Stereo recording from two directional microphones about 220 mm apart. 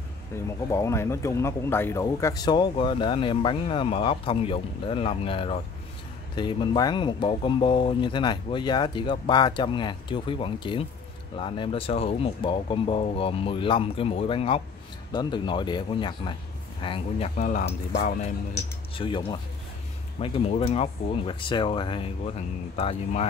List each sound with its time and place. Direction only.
0.3 s speech: 10° left (ahead or behind)
17.4 s speech: 40° left (ahead or behind)